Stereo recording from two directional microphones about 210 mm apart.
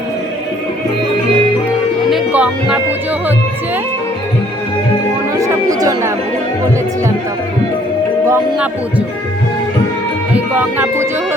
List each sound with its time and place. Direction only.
2.0 s music: 5° right (ahead or behind)
5.4 s speech: 15° right (ahead or behind)
8.3 s speech: 5° right (ahead or behind)
10.3 s speech: 10° right (ahead or behind)